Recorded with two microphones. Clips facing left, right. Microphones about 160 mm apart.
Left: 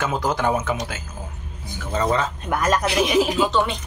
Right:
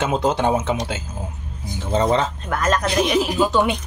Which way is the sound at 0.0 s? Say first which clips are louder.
Right 3 dB; 25° right (ahead or behind).